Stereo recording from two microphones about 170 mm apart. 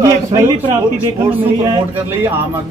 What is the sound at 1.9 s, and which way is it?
Speech, 10° right (ahead or behind).